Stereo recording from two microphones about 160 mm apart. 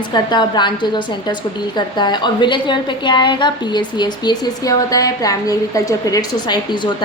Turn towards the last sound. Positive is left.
turn(degrees=30)  # may be behind; listen again after turning